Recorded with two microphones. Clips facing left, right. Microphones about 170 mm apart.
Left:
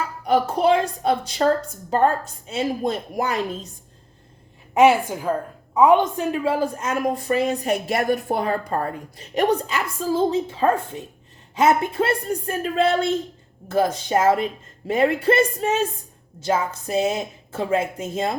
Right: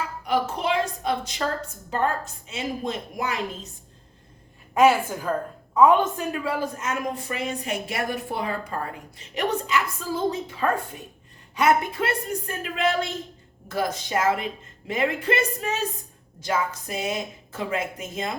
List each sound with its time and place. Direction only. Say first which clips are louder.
0.3 s a woman's voice: left 7 dB; 35° left (ahead or behind)
4.7 s a woman's voice: left 3 dB; 20° left (ahead or behind)